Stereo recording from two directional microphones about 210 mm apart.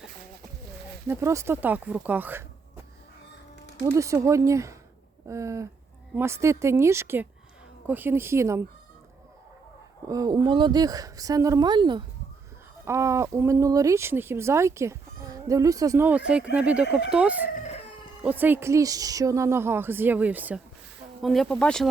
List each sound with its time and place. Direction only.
1.0 s speech: 10° right (ahead or behind)
3.9 s speech: 15° right (ahead or behind)
10.1 s speech: 20° right (ahead or behind); by 21.8 s 5° left (ahead or behind)